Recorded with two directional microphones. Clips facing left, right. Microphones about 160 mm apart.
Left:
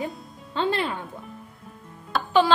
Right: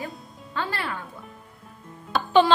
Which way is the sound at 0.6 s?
20° left (ahead or behind).